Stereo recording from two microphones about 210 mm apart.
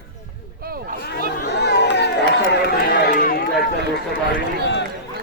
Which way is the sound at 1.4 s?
55° left (ahead or behind).